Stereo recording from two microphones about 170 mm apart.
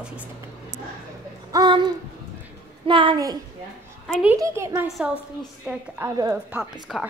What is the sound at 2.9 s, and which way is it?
Speech, 30° right (ahead or behind).